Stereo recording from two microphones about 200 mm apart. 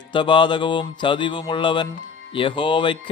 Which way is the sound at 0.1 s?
25° left (ahead or behind).